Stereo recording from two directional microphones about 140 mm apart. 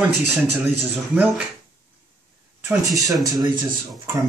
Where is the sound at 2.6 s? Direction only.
20° right (ahead or behind).